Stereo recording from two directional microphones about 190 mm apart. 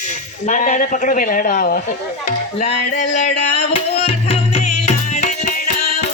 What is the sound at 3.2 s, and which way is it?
Music, 35° left (ahead or behind).